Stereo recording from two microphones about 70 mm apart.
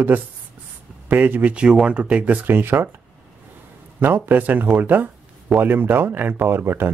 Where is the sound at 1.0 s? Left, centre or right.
Right.